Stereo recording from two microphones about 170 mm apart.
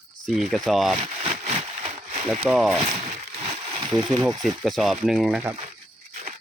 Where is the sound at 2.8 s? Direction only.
40° right (ahead or behind).